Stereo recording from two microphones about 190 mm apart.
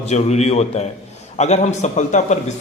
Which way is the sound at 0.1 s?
35° left (ahead or behind).